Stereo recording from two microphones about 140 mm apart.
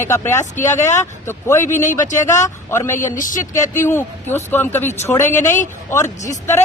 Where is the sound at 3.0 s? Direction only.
70° left (ahead or behind).